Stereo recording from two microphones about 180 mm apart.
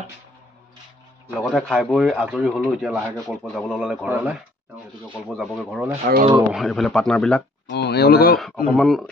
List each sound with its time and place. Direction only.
1.3 s speech: centre (ahead or behind)
3.2 s speech: 5° left (ahead or behind)
7.7 s speech: 65° left (ahead or behind)
8.6 s speech: centre (ahead or behind)